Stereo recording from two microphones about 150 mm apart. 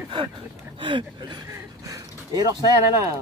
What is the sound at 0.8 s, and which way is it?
Speech, 30° right (ahead or behind).